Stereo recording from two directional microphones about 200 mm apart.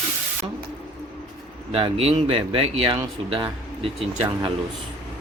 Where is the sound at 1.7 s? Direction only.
30° right (ahead or behind).